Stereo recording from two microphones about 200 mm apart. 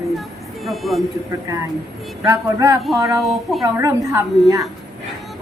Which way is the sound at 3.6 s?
15° right (ahead or behind).